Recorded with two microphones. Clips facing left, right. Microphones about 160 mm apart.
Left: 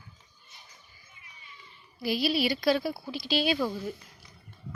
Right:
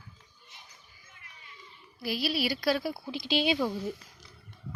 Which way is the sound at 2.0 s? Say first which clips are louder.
Left 3 dB; centre (ahead or behind).